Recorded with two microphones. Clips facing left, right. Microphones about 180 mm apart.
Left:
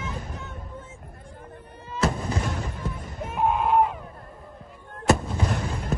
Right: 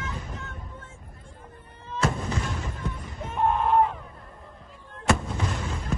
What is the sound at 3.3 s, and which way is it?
Screaming, 5° left (ahead or behind).